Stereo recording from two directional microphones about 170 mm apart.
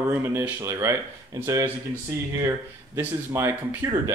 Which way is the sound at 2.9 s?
15° right (ahead or behind).